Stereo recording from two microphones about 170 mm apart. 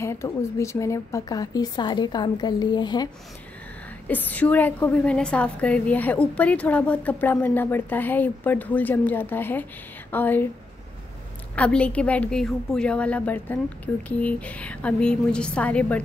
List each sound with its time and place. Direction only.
0.0 s a woman's voice: 15° left (ahead or behind)
4.1 s a woman's voice: 10° left (ahead or behind)
11.5 s a woman's voice: 5° left (ahead or behind)